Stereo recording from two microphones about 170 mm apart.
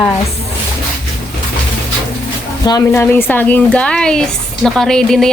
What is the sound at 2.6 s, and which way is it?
Speech, 20° left (ahead or behind).